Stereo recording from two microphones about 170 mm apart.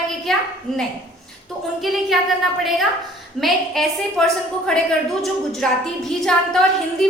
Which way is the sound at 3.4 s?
Centre (ahead or behind).